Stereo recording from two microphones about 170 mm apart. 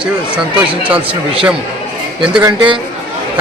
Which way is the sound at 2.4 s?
25° right (ahead or behind).